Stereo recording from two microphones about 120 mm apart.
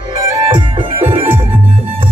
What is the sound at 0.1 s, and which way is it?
Music, 45° right (ahead or behind).